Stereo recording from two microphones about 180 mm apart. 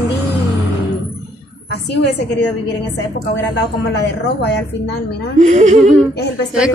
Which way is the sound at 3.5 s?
70° left (ahead or behind).